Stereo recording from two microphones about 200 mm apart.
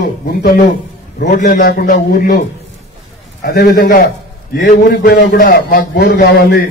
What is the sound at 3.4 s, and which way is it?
A man's voice, 50° left (ahead or behind).